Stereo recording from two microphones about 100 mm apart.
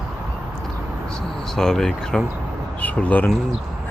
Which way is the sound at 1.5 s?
5° left (ahead or behind).